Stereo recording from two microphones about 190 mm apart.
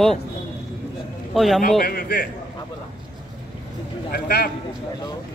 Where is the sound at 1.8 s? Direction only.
50° left (ahead or behind).